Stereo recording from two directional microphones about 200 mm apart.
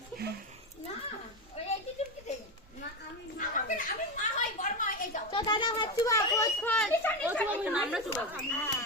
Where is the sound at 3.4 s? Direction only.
40° left (ahead or behind).